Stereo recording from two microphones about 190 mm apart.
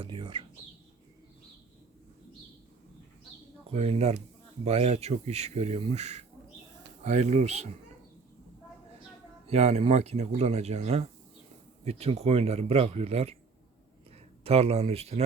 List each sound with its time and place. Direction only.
0.0 s speech: 25° right (ahead or behind)
3.7 s speech: 30° right (ahead or behind)
9.5 s speech: 35° right (ahead or behind)
14.4 s speech: 35° right (ahead or behind)